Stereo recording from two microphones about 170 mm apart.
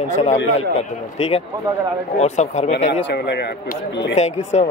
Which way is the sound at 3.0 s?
75° left (ahead or behind).